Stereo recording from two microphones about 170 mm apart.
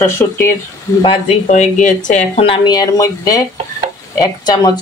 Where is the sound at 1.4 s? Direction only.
45° left (ahead or behind).